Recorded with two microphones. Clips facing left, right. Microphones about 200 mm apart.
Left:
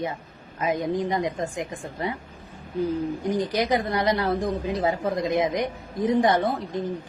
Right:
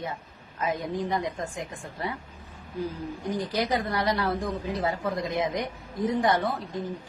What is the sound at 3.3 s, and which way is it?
Speech, 20° left (ahead or behind).